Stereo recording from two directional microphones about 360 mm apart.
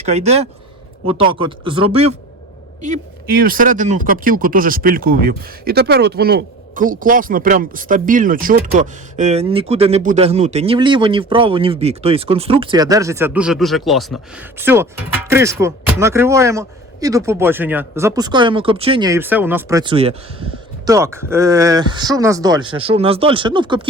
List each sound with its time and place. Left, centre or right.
0.0 s speech: centre